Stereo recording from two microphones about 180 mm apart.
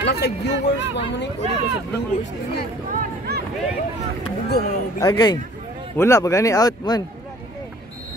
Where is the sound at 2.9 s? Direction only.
55° right (ahead or behind).